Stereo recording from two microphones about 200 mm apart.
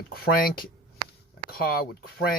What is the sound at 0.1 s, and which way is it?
Speech, 50° left (ahead or behind).